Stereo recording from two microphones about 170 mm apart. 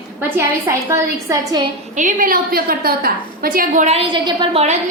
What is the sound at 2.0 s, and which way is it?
A woman's voice, 50° right (ahead or behind).